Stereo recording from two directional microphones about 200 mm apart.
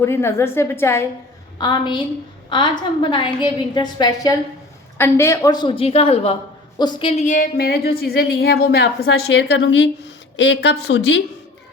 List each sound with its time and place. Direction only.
0.0 s a woman's voice: 15° left (ahead or behind)
3.0 s a woman's voice: 25° left (ahead or behind); by 9.0 s 50° left (ahead or behind)
9.0 s a woman's voice: 65° left (ahead or behind)